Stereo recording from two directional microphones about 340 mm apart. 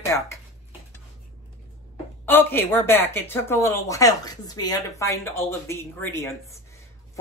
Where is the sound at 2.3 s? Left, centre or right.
Centre.